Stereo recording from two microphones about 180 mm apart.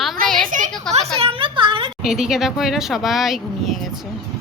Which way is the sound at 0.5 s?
45° right (ahead or behind).